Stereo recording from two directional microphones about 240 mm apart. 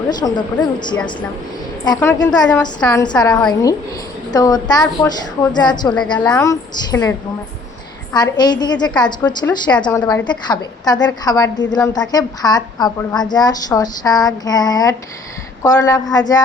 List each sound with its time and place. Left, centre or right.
0.1 s a woman's voice: centre
3.0 s a woman's voice: centre
6.1 s a woman's voice: centre